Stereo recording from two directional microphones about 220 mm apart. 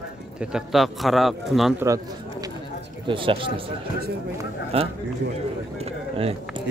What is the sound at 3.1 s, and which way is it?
Speech, 25° right (ahead or behind).